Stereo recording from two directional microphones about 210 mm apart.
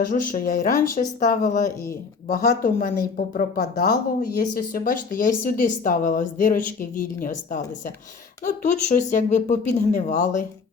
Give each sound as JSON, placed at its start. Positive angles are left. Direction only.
{"t": 0.0, "sound": "speech", "side_deg": 40}